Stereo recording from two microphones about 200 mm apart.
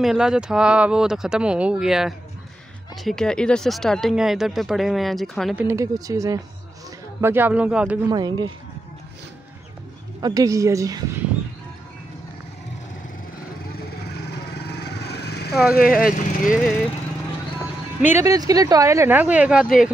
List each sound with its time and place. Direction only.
0.0 s speech: centre (ahead or behind)
5.7 s speech: 15° right (ahead or behind)
8.1 s speech: 20° right (ahead or behind)
10.2 s speech: 15° right (ahead or behind)
13.8 s vehicle: 55° left (ahead or behind)
15.7 s speech: 45° left (ahead or behind)
18.0 s speech: 15° right (ahead or behind)